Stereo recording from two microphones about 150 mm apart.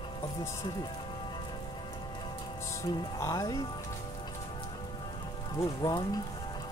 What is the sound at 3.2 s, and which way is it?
Speech, 25° left (ahead or behind).